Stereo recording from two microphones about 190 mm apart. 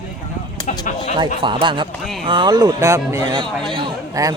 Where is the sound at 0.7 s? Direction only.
40° left (ahead or behind).